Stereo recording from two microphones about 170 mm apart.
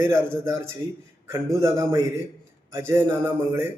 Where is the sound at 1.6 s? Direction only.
15° right (ahead or behind).